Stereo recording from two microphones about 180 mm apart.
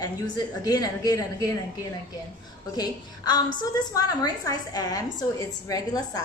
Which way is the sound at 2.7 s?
20° left (ahead or behind).